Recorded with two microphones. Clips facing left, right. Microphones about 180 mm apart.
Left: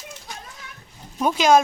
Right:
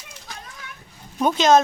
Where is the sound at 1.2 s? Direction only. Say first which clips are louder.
Right 1 dB; 10° left (ahead or behind).